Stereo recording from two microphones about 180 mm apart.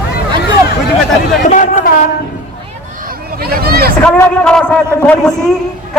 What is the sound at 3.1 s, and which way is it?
Hubbub, 55° right (ahead or behind).